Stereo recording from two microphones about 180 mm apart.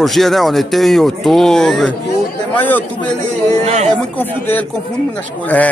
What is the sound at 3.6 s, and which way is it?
Speech, 40° right (ahead or behind).